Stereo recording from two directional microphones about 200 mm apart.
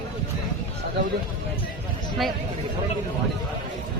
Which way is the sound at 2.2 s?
Centre (ahead or behind).